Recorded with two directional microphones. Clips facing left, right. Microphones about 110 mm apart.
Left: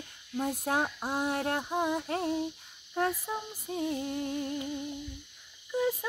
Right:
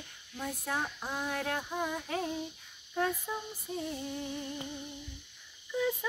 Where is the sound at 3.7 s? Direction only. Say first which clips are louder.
Left 5 dB; 50° left (ahead or behind).